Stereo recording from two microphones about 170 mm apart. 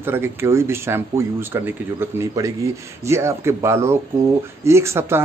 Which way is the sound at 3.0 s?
15° right (ahead or behind).